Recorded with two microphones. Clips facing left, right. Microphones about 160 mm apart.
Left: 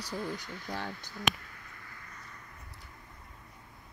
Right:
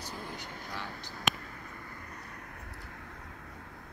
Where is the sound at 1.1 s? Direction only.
45° right (ahead or behind); by 3.7 s 75° right (ahead or behind).